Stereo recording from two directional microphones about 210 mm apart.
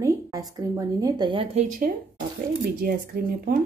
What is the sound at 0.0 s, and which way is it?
Speech, 15° right (ahead or behind).